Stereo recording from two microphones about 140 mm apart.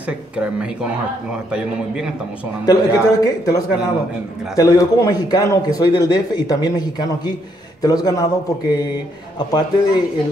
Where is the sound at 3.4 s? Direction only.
25° left (ahead or behind).